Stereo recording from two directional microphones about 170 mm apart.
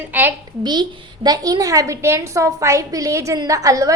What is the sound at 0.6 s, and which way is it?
A woman's voice, 25° right (ahead or behind).